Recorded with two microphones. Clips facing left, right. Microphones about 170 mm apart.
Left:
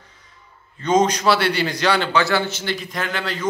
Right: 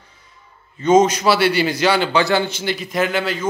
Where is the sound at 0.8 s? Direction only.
5° right (ahead or behind).